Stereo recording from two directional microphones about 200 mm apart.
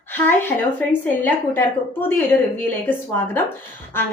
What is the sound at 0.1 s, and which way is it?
A woman's voice, 10° left (ahead or behind).